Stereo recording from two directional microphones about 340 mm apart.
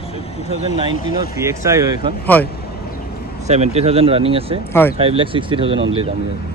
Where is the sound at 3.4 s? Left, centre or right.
Centre.